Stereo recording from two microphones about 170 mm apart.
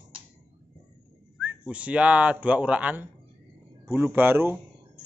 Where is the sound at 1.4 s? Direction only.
5° right (ahead or behind).